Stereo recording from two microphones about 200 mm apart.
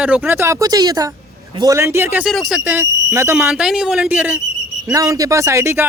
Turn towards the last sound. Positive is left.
turn(degrees=-15)  # may be behind; listen again after turning